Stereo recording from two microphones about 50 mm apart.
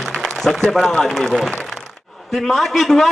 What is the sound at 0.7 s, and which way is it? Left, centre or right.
Speech, centre.